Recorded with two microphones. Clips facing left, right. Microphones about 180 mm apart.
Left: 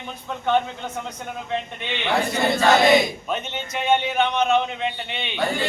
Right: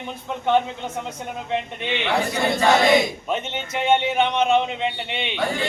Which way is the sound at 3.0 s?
25° right (ahead or behind).